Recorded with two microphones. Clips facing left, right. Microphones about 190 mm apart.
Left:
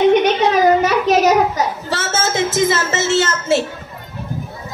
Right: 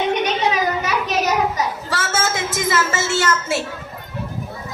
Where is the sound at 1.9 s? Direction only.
25° left (ahead or behind).